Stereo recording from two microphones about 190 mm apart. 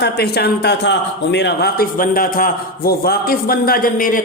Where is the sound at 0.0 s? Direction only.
60° left (ahead or behind).